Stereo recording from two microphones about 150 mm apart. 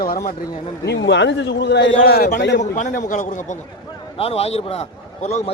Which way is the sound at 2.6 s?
55° left (ahead or behind).